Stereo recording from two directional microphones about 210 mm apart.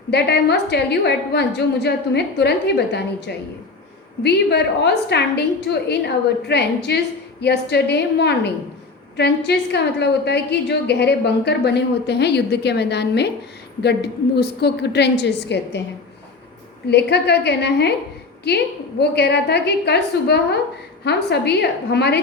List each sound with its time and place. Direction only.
0.1 s a woman's voice: 50° left (ahead or behind)
16.9 s a woman's voice: 55° left (ahead or behind)